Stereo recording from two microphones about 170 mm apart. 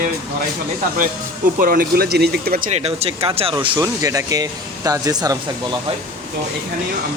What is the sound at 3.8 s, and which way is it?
Speech, 20° right (ahead or behind).